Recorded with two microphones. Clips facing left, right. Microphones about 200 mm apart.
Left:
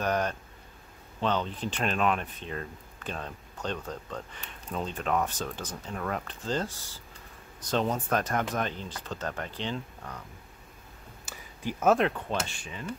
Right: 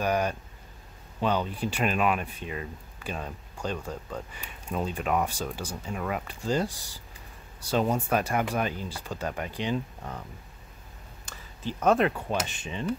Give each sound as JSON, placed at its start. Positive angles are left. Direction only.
{"t": 0.0, "sound": "speech", "side_deg": -10}
{"t": 11.2, "sound": "a sound", "side_deg": 5}
{"t": 12.1, "sound": "speech", "side_deg": -10}
{"t": 12.5, "sound": "speech", "side_deg": -25}